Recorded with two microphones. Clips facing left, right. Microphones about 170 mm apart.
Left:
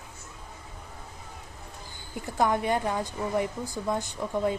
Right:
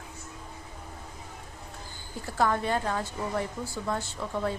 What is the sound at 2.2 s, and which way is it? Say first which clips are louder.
A woman's voice: left 1 dB; 15° left (ahead or behind).